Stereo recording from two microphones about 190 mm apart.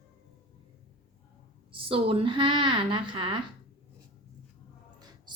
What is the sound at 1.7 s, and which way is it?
A woman's voice, 30° right (ahead or behind).